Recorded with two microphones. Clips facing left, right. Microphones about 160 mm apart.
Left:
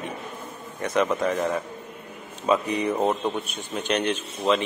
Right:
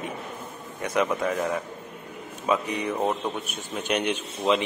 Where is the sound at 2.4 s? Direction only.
Centre (ahead or behind).